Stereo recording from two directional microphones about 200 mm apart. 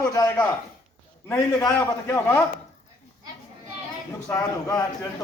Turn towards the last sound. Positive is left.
turn(degrees=15)  # may be behind; listen again after turning